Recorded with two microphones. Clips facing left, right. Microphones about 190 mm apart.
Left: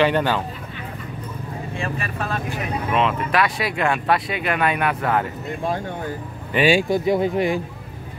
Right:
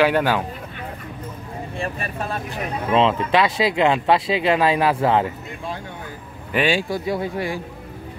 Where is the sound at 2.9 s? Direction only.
25° right (ahead or behind).